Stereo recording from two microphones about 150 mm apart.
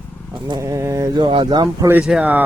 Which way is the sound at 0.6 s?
20° right (ahead or behind).